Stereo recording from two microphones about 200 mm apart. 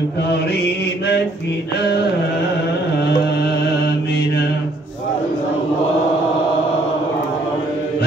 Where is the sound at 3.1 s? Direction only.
55° left (ahead or behind).